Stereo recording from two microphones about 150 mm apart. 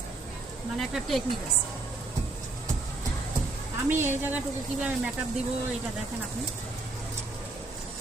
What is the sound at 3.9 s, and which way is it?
Speech, 15° right (ahead or behind).